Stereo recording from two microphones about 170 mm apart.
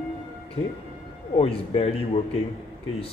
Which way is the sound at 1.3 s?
35° left (ahead or behind).